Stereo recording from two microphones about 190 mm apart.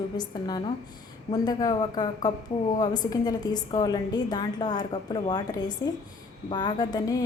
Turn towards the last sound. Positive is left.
turn(degrees=20)  # may be behind; listen again after turning